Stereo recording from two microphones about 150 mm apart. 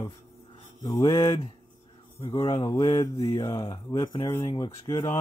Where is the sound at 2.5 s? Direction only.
20° left (ahead or behind).